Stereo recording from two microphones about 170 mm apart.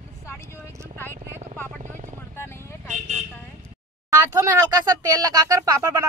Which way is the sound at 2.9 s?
45° right (ahead or behind).